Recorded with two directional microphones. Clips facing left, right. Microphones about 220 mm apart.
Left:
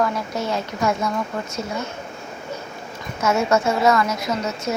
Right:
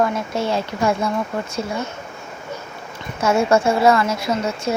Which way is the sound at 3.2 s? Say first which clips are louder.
Right 3 dB; 30° right (ahead or behind).